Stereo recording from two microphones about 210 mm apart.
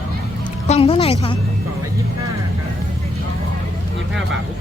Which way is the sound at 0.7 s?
30° left (ahead or behind).